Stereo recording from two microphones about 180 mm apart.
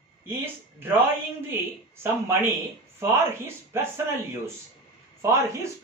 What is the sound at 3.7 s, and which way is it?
Speech, 15° right (ahead or behind).